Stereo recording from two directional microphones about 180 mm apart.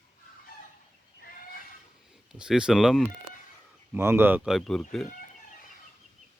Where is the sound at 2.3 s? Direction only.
5° right (ahead or behind).